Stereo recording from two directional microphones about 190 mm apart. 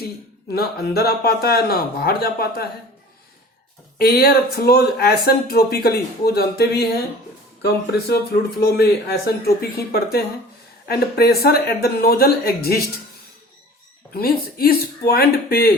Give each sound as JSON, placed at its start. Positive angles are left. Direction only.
{"t": 0.5, "sound": "speech", "side_deg": 55}
{"t": 3.9, "sound": "speech", "side_deg": 55}
{"t": 14.1, "sound": "speech", "side_deg": 50}